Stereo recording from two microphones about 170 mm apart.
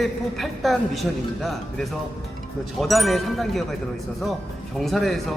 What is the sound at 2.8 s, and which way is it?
Speech, centre (ahead or behind).